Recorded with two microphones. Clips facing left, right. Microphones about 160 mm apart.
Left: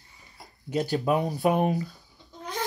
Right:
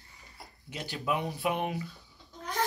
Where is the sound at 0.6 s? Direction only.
40° left (ahead or behind).